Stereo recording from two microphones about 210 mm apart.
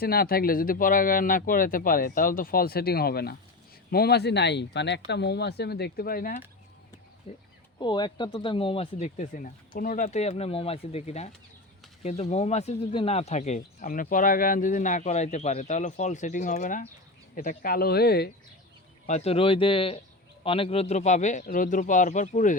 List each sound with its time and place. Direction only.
0.0 s speech: 45° left (ahead or behind)
7.3 s speech: 25° left (ahead or behind); by 18.3 s 50° left (ahead or behind)
19.0 s speech: 30° left (ahead or behind)